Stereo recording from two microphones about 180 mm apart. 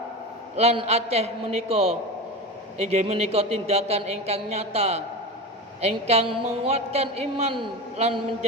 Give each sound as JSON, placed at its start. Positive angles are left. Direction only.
{"t": 0.5, "sound": "a woman's voice", "side_deg": -35}